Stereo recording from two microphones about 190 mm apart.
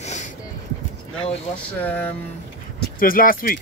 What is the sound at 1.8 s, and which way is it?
Speech, 10° left (ahead or behind).